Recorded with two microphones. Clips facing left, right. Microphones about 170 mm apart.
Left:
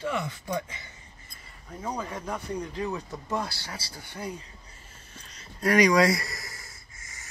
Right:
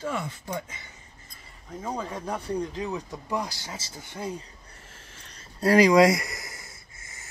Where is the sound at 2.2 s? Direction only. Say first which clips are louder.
Right 5 dB; 30° right (ahead or behind).